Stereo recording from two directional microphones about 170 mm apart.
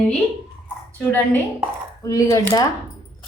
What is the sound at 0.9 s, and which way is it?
A woman's voice, 10° left (ahead or behind).